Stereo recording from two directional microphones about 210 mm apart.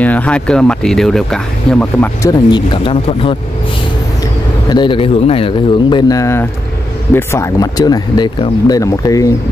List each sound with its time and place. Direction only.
0.0 s speech: 5° left (ahead or behind)
2.3 s speech: 20° left (ahead or behind)
4.6 s speech: 20° left (ahead or behind)